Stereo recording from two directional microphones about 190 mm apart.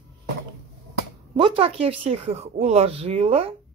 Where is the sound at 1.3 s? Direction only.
30° right (ahead or behind).